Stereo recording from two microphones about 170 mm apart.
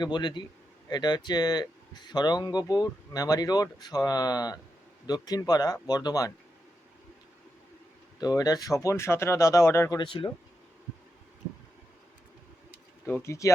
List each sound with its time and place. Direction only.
0.0 s speech: 25° left (ahead or behind)
8.2 s speech: 20° left (ahead or behind)
10.0 s speech: 30° left (ahead or behind)
13.1 s speech: 15° left (ahead or behind)